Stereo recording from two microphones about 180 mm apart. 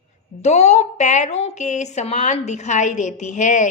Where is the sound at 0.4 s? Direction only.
40° left (ahead or behind).